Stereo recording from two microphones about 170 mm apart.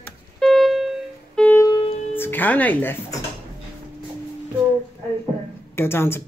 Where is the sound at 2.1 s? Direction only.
10° left (ahead or behind).